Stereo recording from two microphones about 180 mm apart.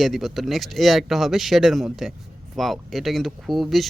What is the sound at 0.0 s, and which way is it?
Speech, centre (ahead or behind).